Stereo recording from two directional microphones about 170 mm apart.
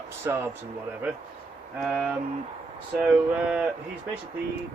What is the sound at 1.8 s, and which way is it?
Speech, 5° right (ahead or behind).